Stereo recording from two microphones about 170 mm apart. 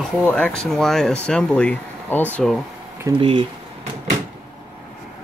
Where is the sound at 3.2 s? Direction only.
30° right (ahead or behind).